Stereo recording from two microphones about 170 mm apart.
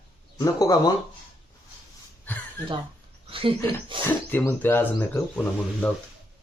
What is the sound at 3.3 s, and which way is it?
Speech, 30° right (ahead or behind).